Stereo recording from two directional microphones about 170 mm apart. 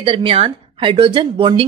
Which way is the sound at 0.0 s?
35° right (ahead or behind).